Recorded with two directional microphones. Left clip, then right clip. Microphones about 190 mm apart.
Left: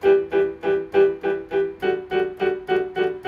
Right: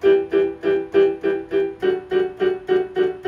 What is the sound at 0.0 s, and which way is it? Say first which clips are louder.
Music: right 1 dB; 25° right (ahead or behind).